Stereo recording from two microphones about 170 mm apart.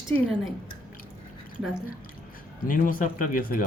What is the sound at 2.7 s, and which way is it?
Speech, 50° left (ahead or behind).